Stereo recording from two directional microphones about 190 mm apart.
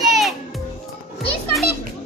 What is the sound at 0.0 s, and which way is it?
Music, centre (ahead or behind).